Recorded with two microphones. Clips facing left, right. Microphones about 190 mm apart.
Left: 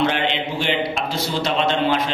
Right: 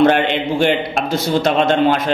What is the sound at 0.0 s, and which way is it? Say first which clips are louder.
A man's voice: right 7 dB; 50° right (ahead or behind).